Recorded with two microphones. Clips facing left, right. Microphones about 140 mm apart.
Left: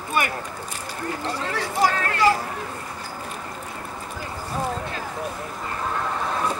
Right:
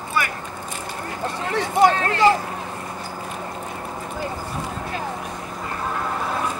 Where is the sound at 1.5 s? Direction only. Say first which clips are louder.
Right 6 dB; 25° right (ahead or behind).